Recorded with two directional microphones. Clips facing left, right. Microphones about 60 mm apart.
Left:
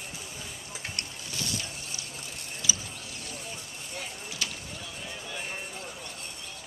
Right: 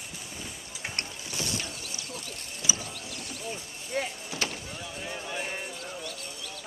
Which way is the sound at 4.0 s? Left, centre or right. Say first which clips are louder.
Right 6 dB; right.